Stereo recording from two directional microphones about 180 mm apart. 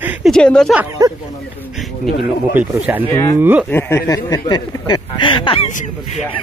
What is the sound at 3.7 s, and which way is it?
Speech, 15° left (ahead or behind).